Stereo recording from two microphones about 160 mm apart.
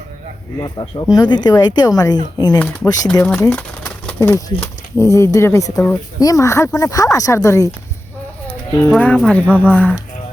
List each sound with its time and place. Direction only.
0.6 s speech: 25° left (ahead or behind)
2.6 s speech: 10° left (ahead or behind)
9.0 s speech: 10° left (ahead or behind)